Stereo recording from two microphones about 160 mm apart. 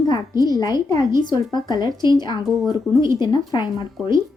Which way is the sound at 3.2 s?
30° left (ahead or behind).